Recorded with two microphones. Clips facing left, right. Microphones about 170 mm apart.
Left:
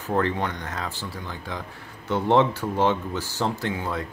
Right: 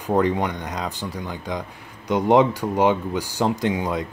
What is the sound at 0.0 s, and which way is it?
Speech, 15° right (ahead or behind).